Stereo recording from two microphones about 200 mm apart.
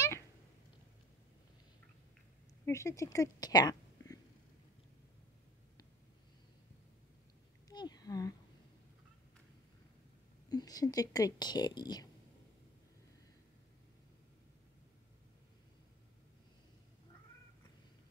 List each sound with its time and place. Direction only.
2.6 s speech: 15° left (ahead or behind)
7.7 s a sound: 20° left (ahead or behind)
10.5 s speech: 20° left (ahead or behind)